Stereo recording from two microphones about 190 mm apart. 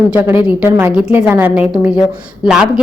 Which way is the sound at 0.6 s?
10° right (ahead or behind).